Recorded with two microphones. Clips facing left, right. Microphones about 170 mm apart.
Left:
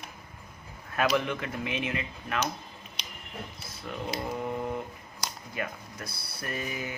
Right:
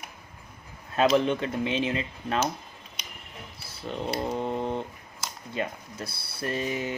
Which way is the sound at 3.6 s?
30° right (ahead or behind).